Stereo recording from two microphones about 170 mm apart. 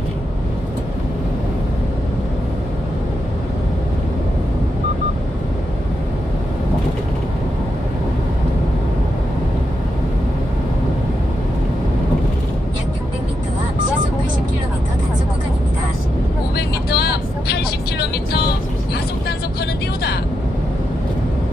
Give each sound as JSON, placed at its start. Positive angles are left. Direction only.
{"t": 16.5, "sound": "vehicle", "side_deg": 70}